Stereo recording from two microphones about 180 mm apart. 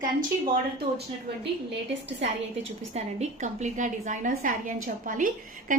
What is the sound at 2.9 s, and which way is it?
A woman's voice, 40° right (ahead or behind).